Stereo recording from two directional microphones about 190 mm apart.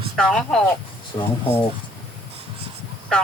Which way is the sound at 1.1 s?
35° left (ahead or behind).